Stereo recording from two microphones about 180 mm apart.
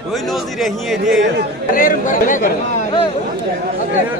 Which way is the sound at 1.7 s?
50° left (ahead or behind).